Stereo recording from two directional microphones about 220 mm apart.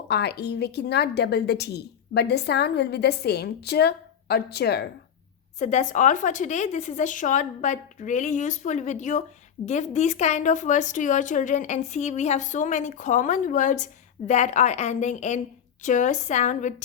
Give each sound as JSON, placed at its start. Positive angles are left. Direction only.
{"t": 0.1, "sound": "a woman's voice", "side_deg": 50}
{"t": 5.5, "sound": "a woman's voice", "side_deg": 35}